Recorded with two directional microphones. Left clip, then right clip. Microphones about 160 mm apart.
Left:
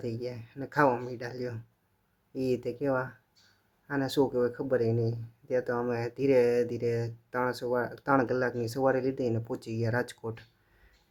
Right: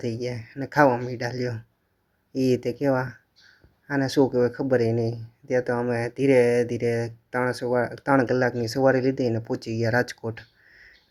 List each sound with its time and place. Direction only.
0.0 s speech: 20° right (ahead or behind)